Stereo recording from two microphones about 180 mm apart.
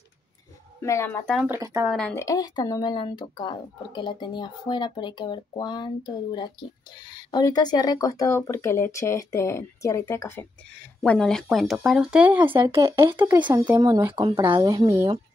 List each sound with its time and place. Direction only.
0.7 s a woman's voice: 15° left (ahead or behind)
1.2 s speech: centre (ahead or behind)
1.5 s speech: 15° right (ahead or behind)
1.9 s speech: 5° left (ahead or behind)
2.1 s speech: 20° left (ahead or behind)
7.1 s speech: 25° left (ahead or behind)
11.0 s speech: centre (ahead or behind)
12.6 s speech: 25° right (ahead or behind)
13.2 s speech: 10° right (ahead or behind)